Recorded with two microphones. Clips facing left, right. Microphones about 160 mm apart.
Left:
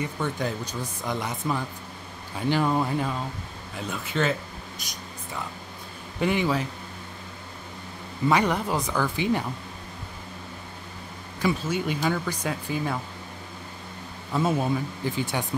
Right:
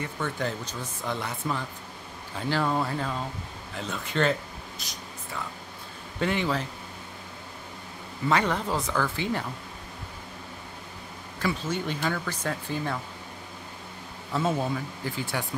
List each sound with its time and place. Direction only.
0.0 s speech: 15° left (ahead or behind)
4.7 s a sound: 15° left (ahead or behind)
6.1 s speech: 10° left (ahead or behind)
8.3 s speech: 15° left (ahead or behind)
11.3 s speech: 10° left (ahead or behind)
14.3 s speech: 15° left (ahead or behind)